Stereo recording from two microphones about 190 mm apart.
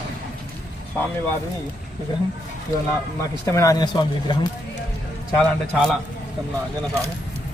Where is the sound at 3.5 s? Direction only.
15° left (ahead or behind).